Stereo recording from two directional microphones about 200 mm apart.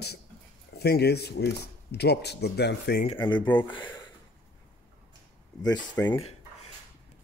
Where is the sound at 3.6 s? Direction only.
25° left (ahead or behind).